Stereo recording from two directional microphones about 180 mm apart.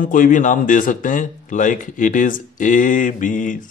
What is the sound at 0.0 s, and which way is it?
Speech, 50° left (ahead or behind).